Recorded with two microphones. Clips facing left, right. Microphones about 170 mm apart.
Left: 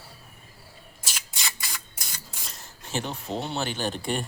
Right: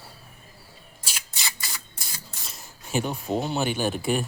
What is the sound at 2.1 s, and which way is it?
Speech, 10° right (ahead or behind).